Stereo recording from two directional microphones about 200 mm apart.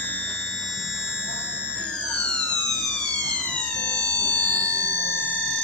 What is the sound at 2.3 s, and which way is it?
Police car, 5° left (ahead or behind).